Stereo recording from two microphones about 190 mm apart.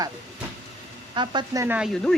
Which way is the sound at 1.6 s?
5° right (ahead or behind).